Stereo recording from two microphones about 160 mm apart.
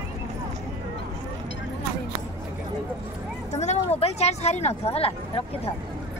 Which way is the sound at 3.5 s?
45° left (ahead or behind).